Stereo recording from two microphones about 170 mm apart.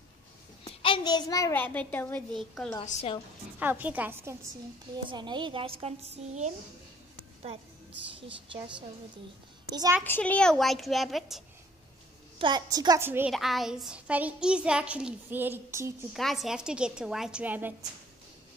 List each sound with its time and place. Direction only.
0.7 s a child's voice: 30° left (ahead or behind); by 2.7 s centre (ahead or behind)
2.8 s a woman's voice: 35° left (ahead or behind)
3.5 s a child's voice: 10° right (ahead or behind)
4.9 s a woman's voice: 25° right (ahead or behind)
9.7 s a child's voice: 25° right (ahead or behind)
10.0 s a woman's voice: 10° left (ahead or behind)
12.4 s a woman's voice: 25° right (ahead or behind)
13.3 s a child's voice: centre (ahead or behind)
16.1 s a woman's voice: centre (ahead or behind)